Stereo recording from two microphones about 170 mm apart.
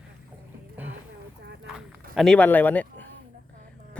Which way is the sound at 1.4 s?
90° right.